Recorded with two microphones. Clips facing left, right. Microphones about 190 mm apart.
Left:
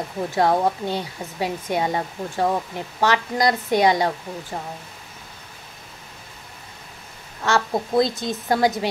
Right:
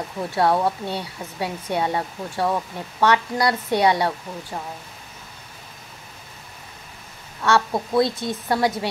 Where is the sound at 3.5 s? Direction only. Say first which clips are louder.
Left 1 dB; 15° left (ahead or behind).